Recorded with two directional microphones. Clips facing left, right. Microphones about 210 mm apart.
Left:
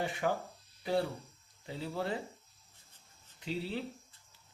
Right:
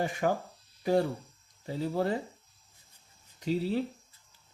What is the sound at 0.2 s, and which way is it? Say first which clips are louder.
Speech: right 4 dB; 45° right (ahead or behind).